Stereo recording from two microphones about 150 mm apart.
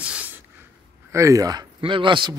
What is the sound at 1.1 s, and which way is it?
Speech, 20° right (ahead or behind).